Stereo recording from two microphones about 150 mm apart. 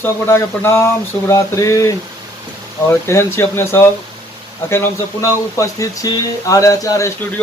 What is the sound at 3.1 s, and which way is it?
Speech, 15° left (ahead or behind).